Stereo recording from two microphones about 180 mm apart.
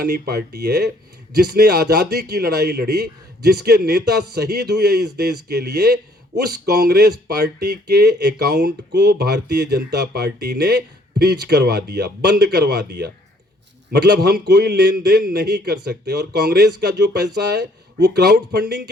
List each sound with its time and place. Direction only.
0.0 s a man's voice: 60° right (ahead or behind)